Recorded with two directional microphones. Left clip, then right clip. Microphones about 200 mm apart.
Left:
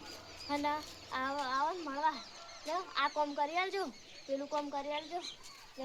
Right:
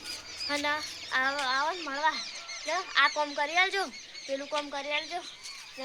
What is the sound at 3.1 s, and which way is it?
Speech, 10° left (ahead or behind).